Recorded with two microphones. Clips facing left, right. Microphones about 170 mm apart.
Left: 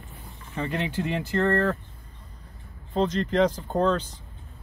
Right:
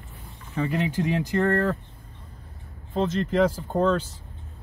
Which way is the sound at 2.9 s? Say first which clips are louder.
Even; 5° right (ahead or behind).